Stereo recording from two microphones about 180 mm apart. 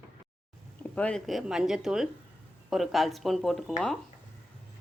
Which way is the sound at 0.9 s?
5° left (ahead or behind).